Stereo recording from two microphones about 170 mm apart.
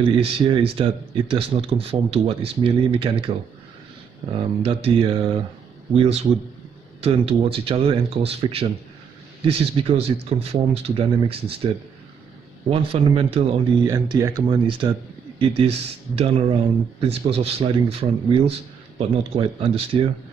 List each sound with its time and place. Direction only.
0.0 s speech: 30° right (ahead or behind)
13.8 s speech: 25° right (ahead or behind)